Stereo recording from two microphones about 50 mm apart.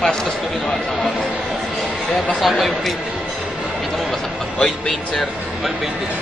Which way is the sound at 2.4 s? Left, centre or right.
Centre.